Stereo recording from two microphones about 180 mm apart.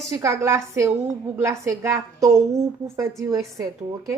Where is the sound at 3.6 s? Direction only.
15° right (ahead or behind).